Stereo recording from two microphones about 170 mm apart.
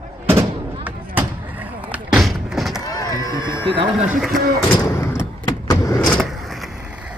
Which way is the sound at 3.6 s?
30° right (ahead or behind).